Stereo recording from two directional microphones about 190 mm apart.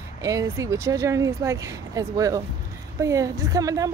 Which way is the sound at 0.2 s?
20° right (ahead or behind).